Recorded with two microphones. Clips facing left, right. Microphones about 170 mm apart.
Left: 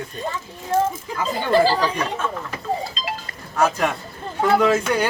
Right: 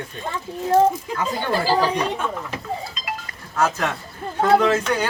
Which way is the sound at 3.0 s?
30° left (ahead or behind).